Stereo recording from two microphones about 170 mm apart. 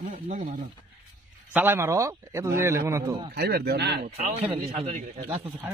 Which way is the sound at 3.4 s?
70° right (ahead or behind).